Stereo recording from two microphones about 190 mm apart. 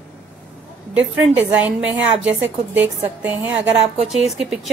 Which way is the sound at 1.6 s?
5° right (ahead or behind).